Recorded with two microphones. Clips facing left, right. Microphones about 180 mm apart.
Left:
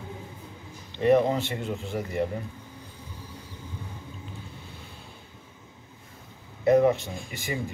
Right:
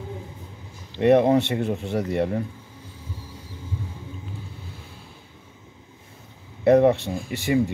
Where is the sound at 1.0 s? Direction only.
65° right (ahead or behind).